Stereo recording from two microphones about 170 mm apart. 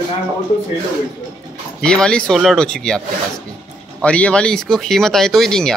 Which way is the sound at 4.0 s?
5° left (ahead or behind).